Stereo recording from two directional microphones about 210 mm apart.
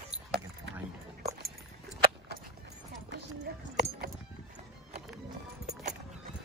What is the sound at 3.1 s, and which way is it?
Clip-clop, 55° right (ahead or behind).